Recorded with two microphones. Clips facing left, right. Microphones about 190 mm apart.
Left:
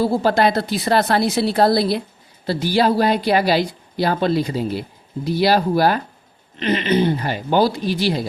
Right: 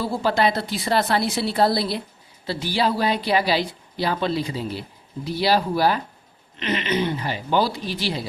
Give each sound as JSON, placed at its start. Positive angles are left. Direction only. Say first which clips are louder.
{"t": 0.0, "sound": "a woman's voice", "louder": "left 5 dB", "side_deg": 45}
{"t": 6.6, "sound": "a woman's voice", "louder": "left 6 dB", "side_deg": 35}